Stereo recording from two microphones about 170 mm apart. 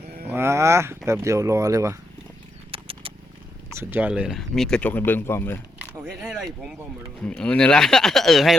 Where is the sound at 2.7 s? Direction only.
35° right (ahead or behind).